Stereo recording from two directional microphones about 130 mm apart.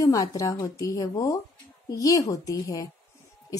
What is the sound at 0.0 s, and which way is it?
A woman's voice, 30° left (ahead or behind).